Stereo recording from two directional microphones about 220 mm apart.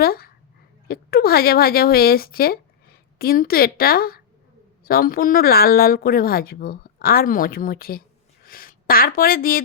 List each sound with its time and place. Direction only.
0.0 s speech: 45° left (ahead or behind)